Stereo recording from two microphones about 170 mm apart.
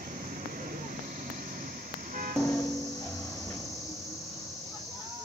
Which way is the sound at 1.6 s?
55° right (ahead or behind).